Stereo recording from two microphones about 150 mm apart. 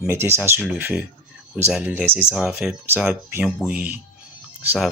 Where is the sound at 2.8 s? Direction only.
15° right (ahead or behind).